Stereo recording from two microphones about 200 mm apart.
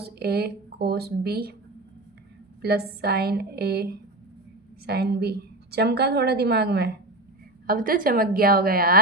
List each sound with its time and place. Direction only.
0.0 s a woman's voice: 55° right (ahead or behind)
2.6 s a woman's voice: 50° right (ahead or behind)